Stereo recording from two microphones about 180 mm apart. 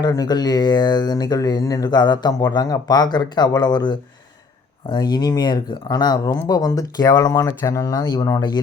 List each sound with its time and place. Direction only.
0.0 s speech: 20° left (ahead or behind)